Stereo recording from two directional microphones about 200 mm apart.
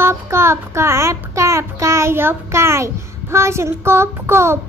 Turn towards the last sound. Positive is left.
turn(degrees=-10)  # may be behind; listen again after turning